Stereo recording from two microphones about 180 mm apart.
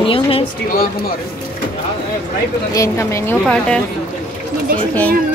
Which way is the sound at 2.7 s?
15° left (ahead or behind).